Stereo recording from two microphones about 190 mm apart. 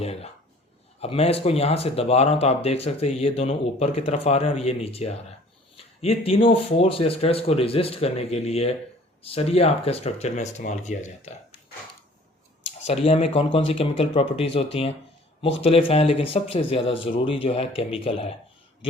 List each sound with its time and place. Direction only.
0.0 s speech: 35° left (ahead or behind)
13.1 s speech: 30° left (ahead or behind)